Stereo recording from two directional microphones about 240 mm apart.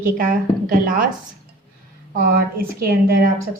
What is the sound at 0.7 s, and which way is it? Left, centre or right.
Speech, right.